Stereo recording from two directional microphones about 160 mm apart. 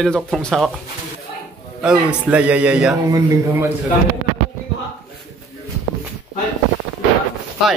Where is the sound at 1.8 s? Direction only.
5° right (ahead or behind).